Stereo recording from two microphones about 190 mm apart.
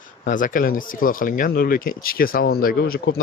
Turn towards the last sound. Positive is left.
turn(degrees=60)  # may be behind; listen again after turning